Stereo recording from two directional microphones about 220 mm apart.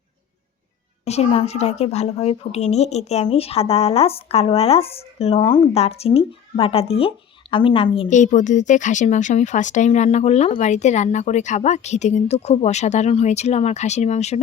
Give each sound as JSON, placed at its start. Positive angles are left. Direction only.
{"t": 1.0, "sound": "a woman's voice", "side_deg": 30}
{"t": 8.1, "sound": "a woman's voice", "side_deg": 35}